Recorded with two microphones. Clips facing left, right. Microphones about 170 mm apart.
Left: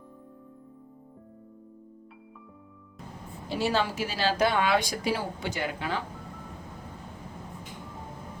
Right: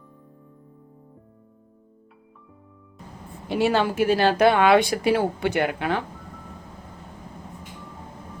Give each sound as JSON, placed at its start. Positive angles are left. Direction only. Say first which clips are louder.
{"t": 3.5, "sound": "speech", "louder": "right 6 dB", "side_deg": -60}